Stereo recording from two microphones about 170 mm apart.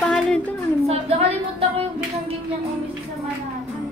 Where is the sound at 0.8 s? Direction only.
35° right (ahead or behind).